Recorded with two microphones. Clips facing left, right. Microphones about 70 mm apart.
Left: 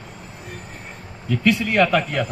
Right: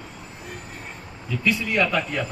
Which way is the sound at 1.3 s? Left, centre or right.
Left.